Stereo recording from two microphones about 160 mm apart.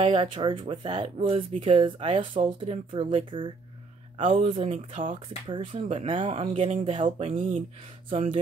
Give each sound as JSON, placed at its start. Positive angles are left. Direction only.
{"t": 0.0, "sound": "speech", "side_deg": -35}
{"t": 4.6, "sound": "speech", "side_deg": -50}